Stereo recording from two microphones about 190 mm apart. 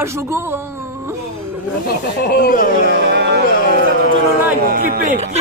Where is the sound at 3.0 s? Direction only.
60° right (ahead or behind).